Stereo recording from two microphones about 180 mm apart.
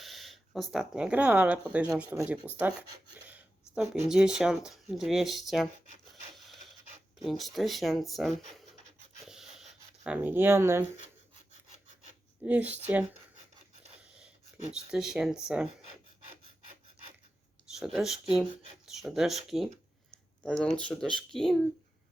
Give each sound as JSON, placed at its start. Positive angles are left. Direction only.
{"t": 0.0, "sound": "speech", "side_deg": 0}
{"t": 7.2, "sound": "speech", "side_deg": 0}
{"t": 9.2, "sound": "a sound", "side_deg": 0}
{"t": 12.4, "sound": "speech", "side_deg": -10}
{"t": 14.0, "sound": "a sound", "side_deg": -5}
{"t": 14.7, "sound": "speech", "side_deg": -5}
{"t": 17.7, "sound": "speech", "side_deg": 0}